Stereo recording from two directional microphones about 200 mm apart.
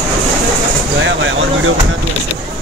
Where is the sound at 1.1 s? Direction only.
70° right (ahead or behind).